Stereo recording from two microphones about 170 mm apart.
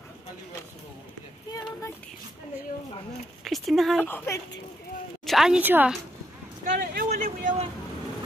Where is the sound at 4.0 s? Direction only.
10° left (ahead or behind).